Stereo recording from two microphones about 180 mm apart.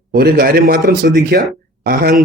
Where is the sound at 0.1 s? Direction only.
55° right (ahead or behind).